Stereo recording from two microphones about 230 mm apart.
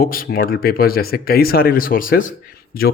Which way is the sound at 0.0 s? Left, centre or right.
Left.